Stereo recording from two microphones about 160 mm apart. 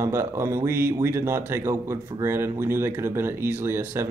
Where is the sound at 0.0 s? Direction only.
15° right (ahead or behind).